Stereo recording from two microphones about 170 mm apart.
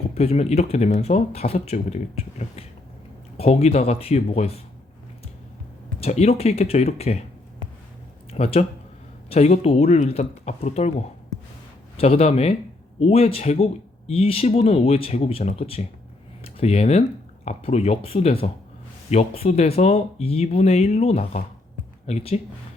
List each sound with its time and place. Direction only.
0.1 s speech: 35° left (ahead or behind)
6.0 s speech: 40° left (ahead or behind)
8.3 s speech: 35° left (ahead or behind)
11.9 s speech: 35° left (ahead or behind)